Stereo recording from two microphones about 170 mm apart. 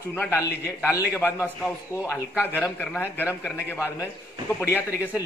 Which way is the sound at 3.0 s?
15° left (ahead or behind).